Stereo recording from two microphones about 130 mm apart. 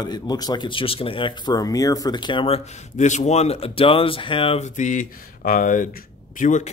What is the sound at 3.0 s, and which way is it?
Speech, 65° left (ahead or behind).